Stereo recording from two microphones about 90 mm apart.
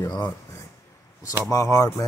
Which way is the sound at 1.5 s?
35° left (ahead or behind).